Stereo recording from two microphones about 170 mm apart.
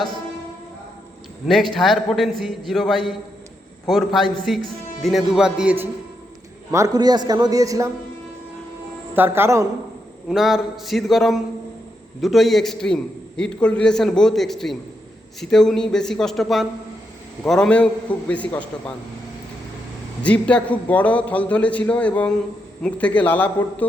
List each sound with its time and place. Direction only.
1.5 s a man's voice: centre (ahead or behind)
6.7 s a man's voice: 20° right (ahead or behind)
9.1 s speech: 10° right (ahead or behind)
10.2 s a man's voice: centre (ahead or behind)
20.2 s a man's voice: 5° left (ahead or behind)